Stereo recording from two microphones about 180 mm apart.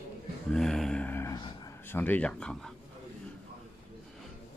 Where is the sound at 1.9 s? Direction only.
10° left (ahead or behind).